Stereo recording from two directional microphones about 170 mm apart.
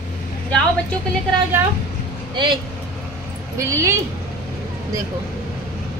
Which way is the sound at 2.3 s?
25° right (ahead or behind).